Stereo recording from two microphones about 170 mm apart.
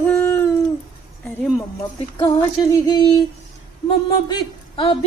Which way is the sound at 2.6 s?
20° left (ahead or behind).